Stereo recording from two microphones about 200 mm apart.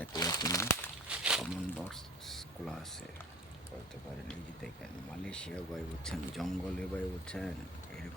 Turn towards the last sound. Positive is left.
turn(degrees=5)  # may be behind; listen again after turning